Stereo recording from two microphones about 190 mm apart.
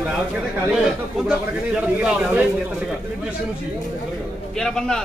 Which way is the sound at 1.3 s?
5° right (ahead or behind).